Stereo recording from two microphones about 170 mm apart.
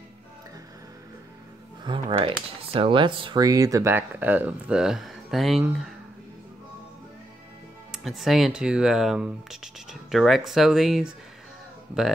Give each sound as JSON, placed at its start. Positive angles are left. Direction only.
{"t": 1.9, "sound": "speech", "side_deg": -30}
{"t": 7.9, "sound": "speech", "side_deg": 0}